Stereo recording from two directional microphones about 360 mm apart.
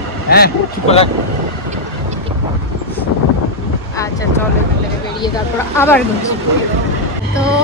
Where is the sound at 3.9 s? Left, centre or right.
Centre.